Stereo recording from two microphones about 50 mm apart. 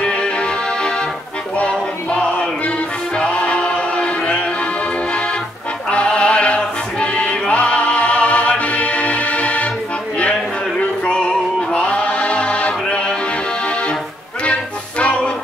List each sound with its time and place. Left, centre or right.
0.0 s music: left
3.2 s choir: left
5.9 s music: left
11.1 s music: left
14.4 s music: left